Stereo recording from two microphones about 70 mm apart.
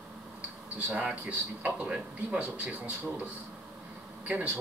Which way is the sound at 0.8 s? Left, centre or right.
Centre.